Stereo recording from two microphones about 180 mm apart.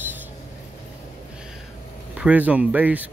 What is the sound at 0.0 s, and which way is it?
Vehicle, 10° right (ahead or behind).